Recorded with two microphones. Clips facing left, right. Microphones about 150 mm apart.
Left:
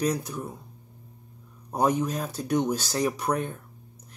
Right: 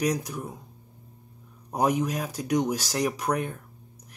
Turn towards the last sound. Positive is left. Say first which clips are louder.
# even
turn(degrees=-10)  # may be behind; listen again after turning